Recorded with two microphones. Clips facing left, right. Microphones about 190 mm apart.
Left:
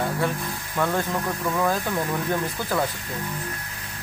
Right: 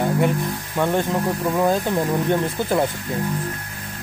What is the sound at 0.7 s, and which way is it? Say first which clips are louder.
Speech: right 4 dB; 20° right (ahead or behind).